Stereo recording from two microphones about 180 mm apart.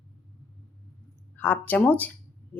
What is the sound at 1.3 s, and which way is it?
Speech, 10° left (ahead or behind).